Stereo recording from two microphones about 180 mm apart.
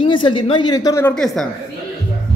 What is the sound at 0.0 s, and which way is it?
Speech, 30° left (ahead or behind).